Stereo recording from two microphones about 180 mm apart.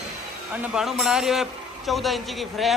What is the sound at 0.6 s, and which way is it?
A man's voice, 5° right (ahead or behind).